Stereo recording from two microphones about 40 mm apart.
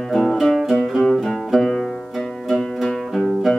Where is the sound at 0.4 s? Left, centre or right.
Centre.